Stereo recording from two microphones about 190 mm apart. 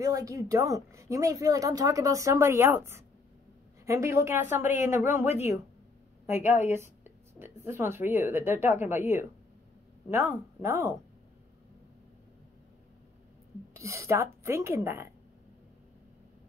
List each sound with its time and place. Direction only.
0.0 s a woman's voice: 20° right (ahead or behind)
7.3 s a woman's voice: 10° right (ahead or behind)
13.7 s a woman's voice: 15° right (ahead or behind)